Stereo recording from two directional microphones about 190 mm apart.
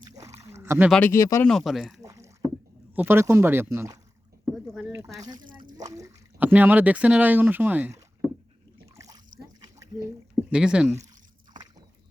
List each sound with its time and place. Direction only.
0.1 s rowboat: 15° right (ahead or behind)
0.9 s speech: 5° left (ahead or behind)
1.5 s speech: centre (ahead or behind)
2.0 s rowboat: 15° right (ahead or behind)
2.9 s speech: 10° right (ahead or behind)
4.5 s a sound: centre (ahead or behind)
5.1 s speech: 20° right (ahead or behind)
9.0 s a sound: 20° right (ahead or behind)
10.5 s speech: 5° right (ahead or behind)